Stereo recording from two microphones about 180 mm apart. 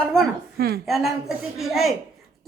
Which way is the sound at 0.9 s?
Centre (ahead or behind).